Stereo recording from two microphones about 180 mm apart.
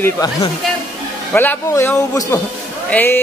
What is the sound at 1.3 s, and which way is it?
A man's voice, 10° left (ahead or behind).